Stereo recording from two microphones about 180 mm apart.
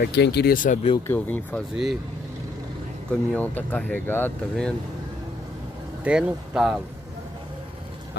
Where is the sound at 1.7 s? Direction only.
5° right (ahead or behind).